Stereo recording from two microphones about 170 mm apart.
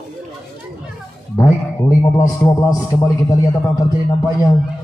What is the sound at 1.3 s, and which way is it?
A man's voice, 15° left (ahead or behind).